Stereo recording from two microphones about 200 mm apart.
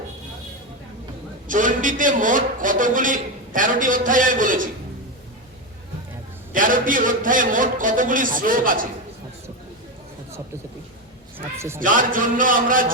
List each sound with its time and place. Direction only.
1.5 s a man's voice: 40° right (ahead or behind)
6.5 s a man's voice: 45° right (ahead or behind)
11.3 s a sound: 15° right (ahead or behind)
11.8 s a man's voice: 45° right (ahead or behind)